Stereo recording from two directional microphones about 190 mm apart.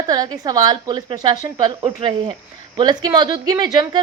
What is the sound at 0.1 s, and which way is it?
A woman's voice, 20° right (ahead or behind).